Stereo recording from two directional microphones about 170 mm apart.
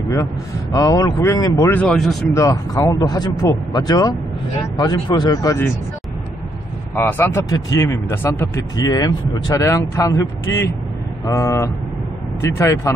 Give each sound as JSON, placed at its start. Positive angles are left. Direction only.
{"t": 0.1, "sound": "speech", "side_deg": 20}
{"t": 1.8, "sound": "speech", "side_deg": 0}
{"t": 2.3, "sound": "speech", "side_deg": 20}
{"t": 7.0, "sound": "speech", "side_deg": 10}